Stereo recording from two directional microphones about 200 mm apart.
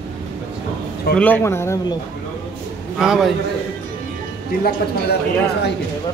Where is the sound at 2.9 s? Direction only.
5° right (ahead or behind).